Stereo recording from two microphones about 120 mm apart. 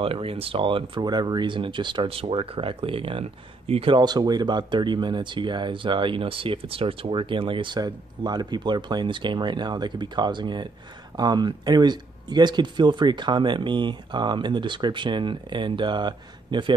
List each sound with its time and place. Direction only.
0.0 s speech: 50° right (ahead or behind)